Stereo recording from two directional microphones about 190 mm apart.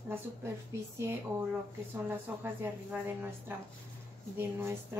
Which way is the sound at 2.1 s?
10° right (ahead or behind).